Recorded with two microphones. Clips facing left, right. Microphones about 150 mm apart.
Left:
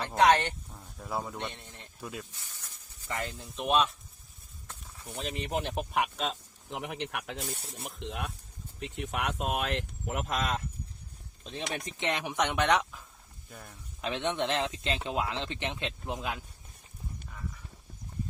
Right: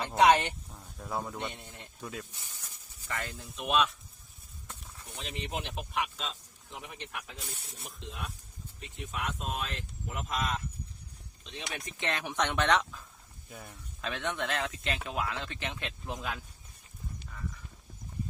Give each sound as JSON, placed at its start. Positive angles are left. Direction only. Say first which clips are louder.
{"t": 0.0, "sound": "speech", "louder": "even", "side_deg": -5}
{"t": 3.1, "sound": "speech", "louder": "left 2 dB", "side_deg": 25}
{"t": 5.1, "sound": "speech", "louder": "left 5 dB", "side_deg": 40}
{"t": 7.4, "sound": "speech", "louder": "left 6 dB", "side_deg": 45}
{"t": 7.9, "sound": "speech", "louder": "left 4 dB", "side_deg": 70}
{"t": 11.4, "sound": "speech", "louder": "left 5 dB", "side_deg": 40}
{"t": 11.9, "sound": "speech", "louder": "left 1 dB", "side_deg": 15}
{"t": 13.5, "sound": "speech", "louder": "right 1 dB", "side_deg": -5}
{"t": 14.0, "sound": "speech", "louder": "left 4 dB", "side_deg": 20}